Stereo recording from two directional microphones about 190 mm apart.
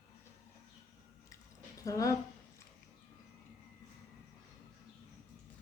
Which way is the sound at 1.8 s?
15° left (ahead or behind).